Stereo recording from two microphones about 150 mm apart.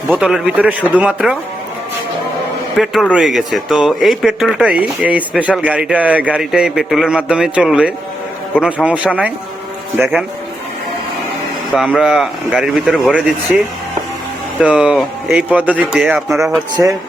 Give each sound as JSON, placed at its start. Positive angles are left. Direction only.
{"t": 0.1, "sound": "a man's voice", "side_deg": -5}
{"t": 2.7, "sound": "a man's voice", "side_deg": 0}
{"t": 11.8, "sound": "speech", "side_deg": 0}
{"t": 14.6, "sound": "a man's voice", "side_deg": -10}